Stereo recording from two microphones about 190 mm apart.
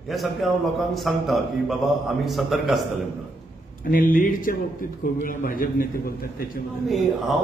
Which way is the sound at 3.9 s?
45° left (ahead or behind).